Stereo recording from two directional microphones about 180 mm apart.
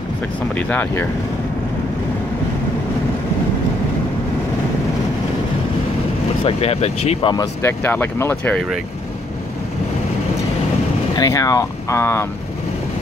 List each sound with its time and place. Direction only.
0.6 s speech: 10° left (ahead or behind)
6.4 s speech: 35° left (ahead or behind)
7.6 s speech: 10° left (ahead or behind)
11.1 s speech: 20° left (ahead or behind)